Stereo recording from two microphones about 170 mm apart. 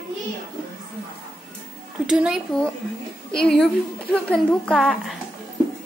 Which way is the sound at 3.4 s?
5° left (ahead or behind).